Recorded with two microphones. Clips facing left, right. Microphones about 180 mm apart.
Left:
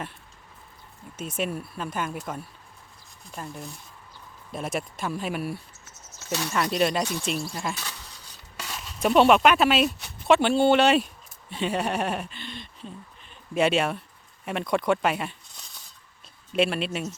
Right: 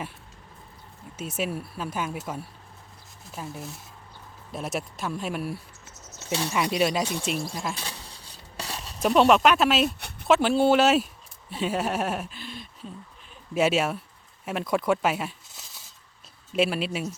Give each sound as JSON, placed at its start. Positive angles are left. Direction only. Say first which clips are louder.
{"t": 1.1, "sound": "speech", "louder": "even", "side_deg": -5}
{"t": 6.1, "sound": "cricket", "louder": "right 1 dB", "side_deg": -25}
{"t": 6.5, "sound": "speech", "louder": "left 1 dB", "side_deg": -5}
{"t": 7.8, "sound": "stir", "louder": "right 1 dB", "side_deg": -30}
{"t": 9.0, "sound": "speech", "louder": "left 1 dB", "side_deg": 0}